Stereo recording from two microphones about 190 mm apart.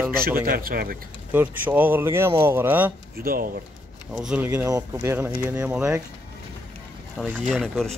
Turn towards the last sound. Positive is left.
turn(degrees=0)  # may be behind; listen again after turning